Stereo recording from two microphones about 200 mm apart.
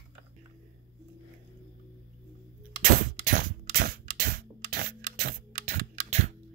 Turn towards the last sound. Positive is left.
turn(degrees=-35)  # may be behind; listen again after turning